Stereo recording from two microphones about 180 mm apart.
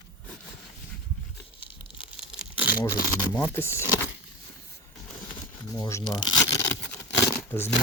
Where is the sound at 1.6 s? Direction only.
30° left (ahead or behind).